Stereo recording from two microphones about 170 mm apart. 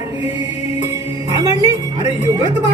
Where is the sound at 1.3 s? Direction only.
20° right (ahead or behind).